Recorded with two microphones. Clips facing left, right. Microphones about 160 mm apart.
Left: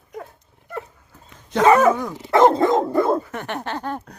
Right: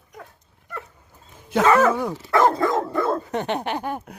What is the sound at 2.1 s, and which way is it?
Dog, 20° left (ahead or behind).